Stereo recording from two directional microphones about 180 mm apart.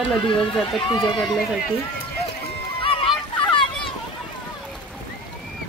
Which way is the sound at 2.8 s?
30° left (ahead or behind).